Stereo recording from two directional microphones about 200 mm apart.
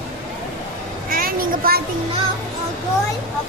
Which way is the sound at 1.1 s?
45° right (ahead or behind).